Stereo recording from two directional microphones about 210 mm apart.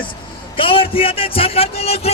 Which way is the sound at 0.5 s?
25° left (ahead or behind).